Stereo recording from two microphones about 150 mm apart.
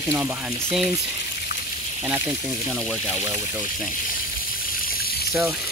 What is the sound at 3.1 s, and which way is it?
Speech, 20° right (ahead or behind).